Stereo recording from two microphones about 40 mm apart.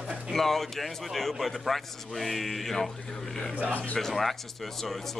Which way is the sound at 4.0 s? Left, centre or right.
Centre.